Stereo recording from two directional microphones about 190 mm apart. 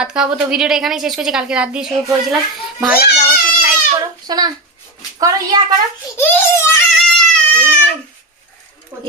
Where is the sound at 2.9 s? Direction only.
55° left (ahead or behind).